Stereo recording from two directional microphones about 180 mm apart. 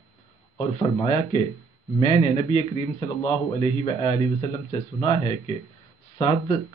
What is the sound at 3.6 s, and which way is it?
Speech, 30° left (ahead or behind).